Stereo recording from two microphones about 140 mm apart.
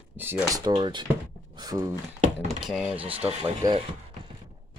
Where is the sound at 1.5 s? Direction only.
25° right (ahead or behind).